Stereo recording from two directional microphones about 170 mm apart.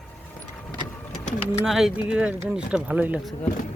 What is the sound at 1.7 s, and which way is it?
Speech, centre (ahead or behind).